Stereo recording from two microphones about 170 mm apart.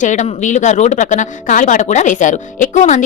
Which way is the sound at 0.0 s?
45° left (ahead or behind).